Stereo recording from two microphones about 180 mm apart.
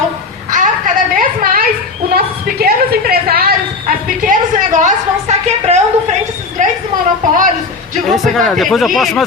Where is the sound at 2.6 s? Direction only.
55° right (ahead or behind).